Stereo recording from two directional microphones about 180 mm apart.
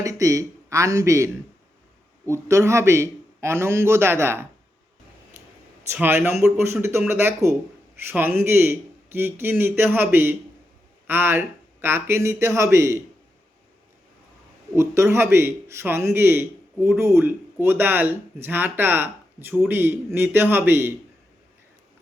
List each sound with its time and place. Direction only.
0.0 s a man's voice: 20° right (ahead or behind)
5.9 s a man's voice: 10° right (ahead or behind)
14.8 s a man's voice: 15° right (ahead or behind)